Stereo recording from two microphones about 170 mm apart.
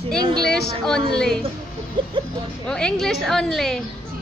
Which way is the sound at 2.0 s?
30° right (ahead or behind).